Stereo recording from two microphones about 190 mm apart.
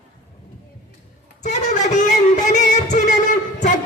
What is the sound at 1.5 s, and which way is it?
Music, 40° left (ahead or behind).